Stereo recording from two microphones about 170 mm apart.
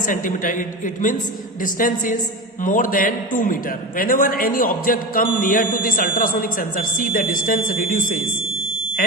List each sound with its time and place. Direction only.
0.0 s a woman's voice: 50° left (ahead or behind)